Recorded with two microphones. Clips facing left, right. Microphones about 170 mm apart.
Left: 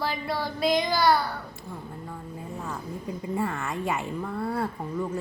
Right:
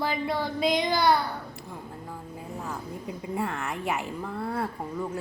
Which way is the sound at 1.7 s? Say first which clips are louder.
Left 3 dB; 5° right (ahead or behind).